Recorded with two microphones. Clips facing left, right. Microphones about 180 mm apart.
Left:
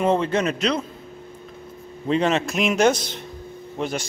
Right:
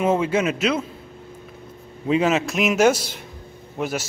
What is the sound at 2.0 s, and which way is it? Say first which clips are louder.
A man's voice: right 1 dB; 5° right (ahead or behind).